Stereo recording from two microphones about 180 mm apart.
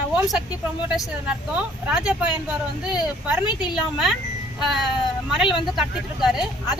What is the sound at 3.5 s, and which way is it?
Speech, 25° left (ahead or behind).